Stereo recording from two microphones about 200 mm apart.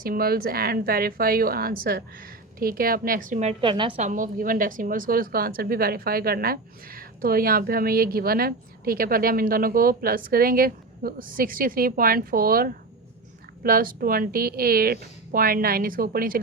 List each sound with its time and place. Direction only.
0.0 s a woman's voice: 50° right (ahead or behind); by 4.0 s 25° right (ahead or behind)
4.0 s a woman's voice: 40° right (ahead or behind)